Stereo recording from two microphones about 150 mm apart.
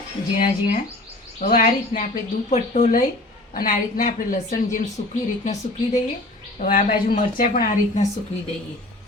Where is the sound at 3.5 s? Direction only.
65° left (ahead or behind).